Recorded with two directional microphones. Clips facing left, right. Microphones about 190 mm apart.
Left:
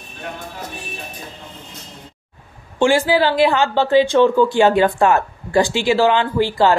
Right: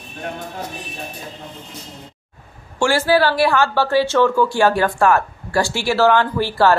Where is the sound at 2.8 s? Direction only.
15° left (ahead or behind).